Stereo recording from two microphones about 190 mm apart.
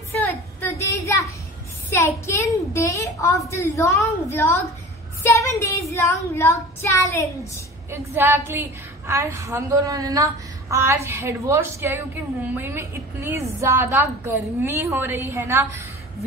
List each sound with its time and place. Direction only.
0.1 s a sound: 10° left (ahead or behind)
1.9 s a child's voice: 15° left (ahead or behind)
7.9 s a woman's voice: 10° right (ahead or behind)